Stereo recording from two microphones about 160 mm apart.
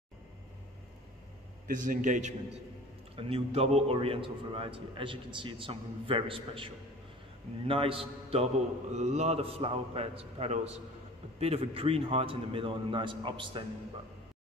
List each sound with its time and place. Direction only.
1.7 s a man's voice: 55° right (ahead or behind); by 13.7 s 30° right (ahead or behind)